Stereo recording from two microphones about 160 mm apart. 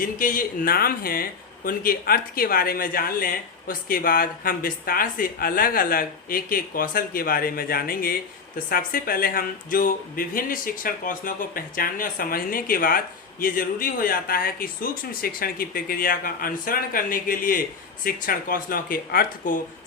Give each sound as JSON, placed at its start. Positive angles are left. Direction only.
{"t": 0.0, "sound": "speech", "side_deg": 60}